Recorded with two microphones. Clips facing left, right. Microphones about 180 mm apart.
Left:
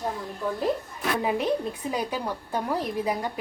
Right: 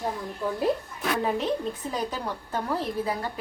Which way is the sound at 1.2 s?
10° left (ahead or behind).